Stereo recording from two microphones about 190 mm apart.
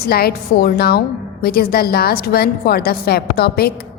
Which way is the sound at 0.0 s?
55° left (ahead or behind).